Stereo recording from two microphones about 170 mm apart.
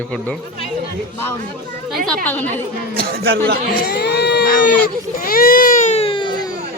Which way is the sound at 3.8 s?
75° left (ahead or behind).